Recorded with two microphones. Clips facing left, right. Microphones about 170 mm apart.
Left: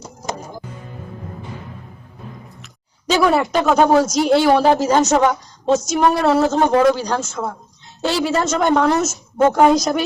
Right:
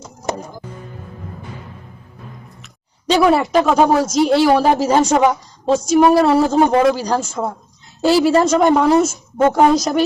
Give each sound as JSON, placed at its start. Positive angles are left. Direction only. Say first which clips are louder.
{"t": 3.1, "sound": "speech", "louder": "right 2 dB", "side_deg": 0}
{"t": 7.4, "sound": "a woman's voice", "louder": "right 3 dB", "side_deg": -15}
{"t": 8.0, "sound": "speech", "louder": "right 6 dB", "side_deg": -5}